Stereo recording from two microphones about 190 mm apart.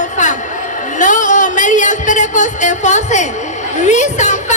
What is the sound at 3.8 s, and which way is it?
Speech, 40° left (ahead or behind).